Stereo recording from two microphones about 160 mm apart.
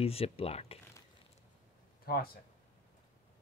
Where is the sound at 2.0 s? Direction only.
70° left (ahead or behind).